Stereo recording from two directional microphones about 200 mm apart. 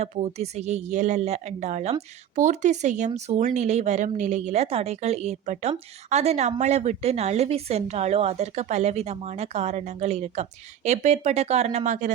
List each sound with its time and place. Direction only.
0.0 s a woman's voice: 35° right (ahead or behind)